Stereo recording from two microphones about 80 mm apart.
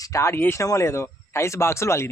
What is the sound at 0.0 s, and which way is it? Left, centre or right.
Speech, left.